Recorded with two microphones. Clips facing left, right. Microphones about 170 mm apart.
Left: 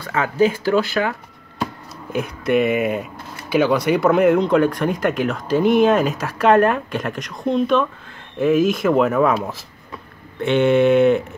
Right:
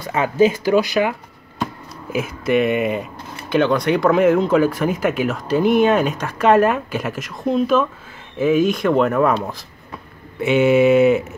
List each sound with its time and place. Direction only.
0.0 s speech: 20° right (ahead or behind)
2.1 s speech: centre (ahead or behind)